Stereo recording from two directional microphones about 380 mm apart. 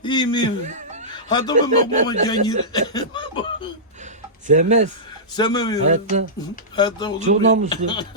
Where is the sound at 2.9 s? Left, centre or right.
Centre.